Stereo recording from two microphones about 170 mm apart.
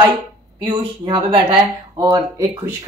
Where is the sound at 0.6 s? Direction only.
25° right (ahead or behind).